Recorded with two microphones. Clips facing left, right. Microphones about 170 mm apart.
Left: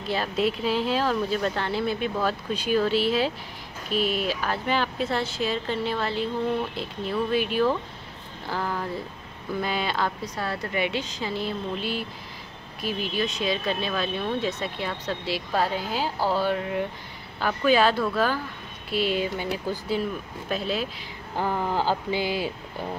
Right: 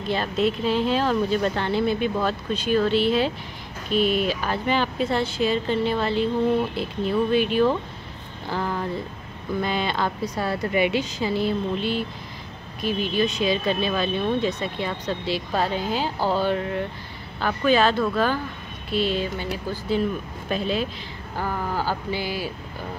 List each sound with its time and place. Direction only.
0.1 s speech: 5° left (ahead or behind)
10.3 s a woman's voice: 15° right (ahead or behind); by 20.0 s 15° left (ahead or behind)
20.4 s speech: 5° left (ahead or behind)
21.4 s speech: 20° left (ahead or behind)